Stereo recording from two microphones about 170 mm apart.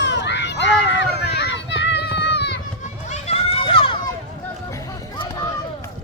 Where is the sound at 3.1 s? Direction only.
40° left (ahead or behind).